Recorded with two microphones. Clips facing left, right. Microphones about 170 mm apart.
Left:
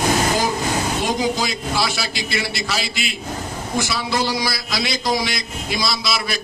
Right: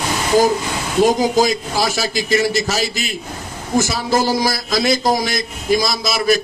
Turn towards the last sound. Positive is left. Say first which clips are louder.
# right 7 dB
turn(degrees=-45)  # may be behind; listen again after turning